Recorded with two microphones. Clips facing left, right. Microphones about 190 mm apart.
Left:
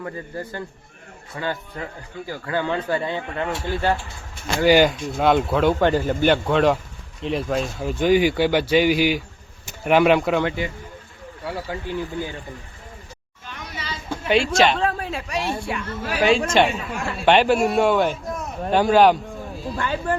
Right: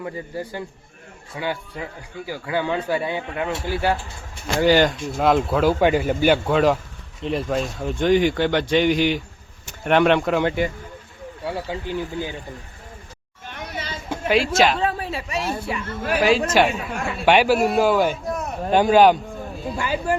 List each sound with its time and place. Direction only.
0.0 s speech: 10° right (ahead or behind)
4.6 s speech: 5° left (ahead or behind)
11.4 s speech: 20° right (ahead or behind)
13.5 s a sound: 50° right (ahead or behind)
14.3 s speech: centre (ahead or behind)
18.9 s a sound: centre (ahead or behind)
19.7 s speech: 5° right (ahead or behind)